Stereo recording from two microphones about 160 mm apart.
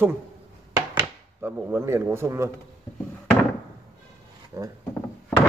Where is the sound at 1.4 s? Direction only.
15° right (ahead or behind).